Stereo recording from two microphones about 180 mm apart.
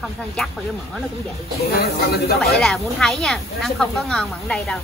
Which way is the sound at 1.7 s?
60° left (ahead or behind).